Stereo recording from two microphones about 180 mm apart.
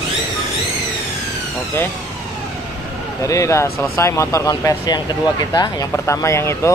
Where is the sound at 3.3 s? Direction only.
15° left (ahead or behind).